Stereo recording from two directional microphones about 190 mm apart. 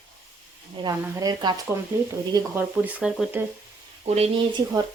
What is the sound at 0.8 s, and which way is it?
Speech, 20° right (ahead or behind).